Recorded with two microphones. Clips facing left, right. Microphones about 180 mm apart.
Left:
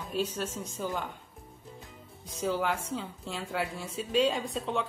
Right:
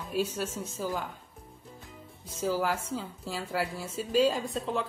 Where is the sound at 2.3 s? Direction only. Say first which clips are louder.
Right 1 dB; centre (ahead or behind).